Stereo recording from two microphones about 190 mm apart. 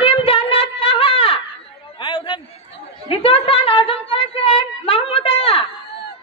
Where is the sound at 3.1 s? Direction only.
30° left (ahead or behind).